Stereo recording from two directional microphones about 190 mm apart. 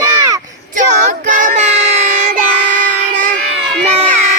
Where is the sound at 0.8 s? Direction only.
40° right (ahead or behind).